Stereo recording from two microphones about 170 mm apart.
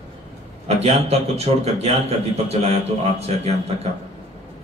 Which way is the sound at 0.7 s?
35° right (ahead or behind).